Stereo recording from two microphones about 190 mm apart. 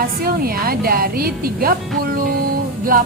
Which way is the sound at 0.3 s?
50° right (ahead or behind).